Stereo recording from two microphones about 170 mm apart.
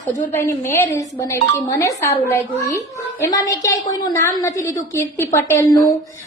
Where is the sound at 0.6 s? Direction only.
15° left (ahead or behind).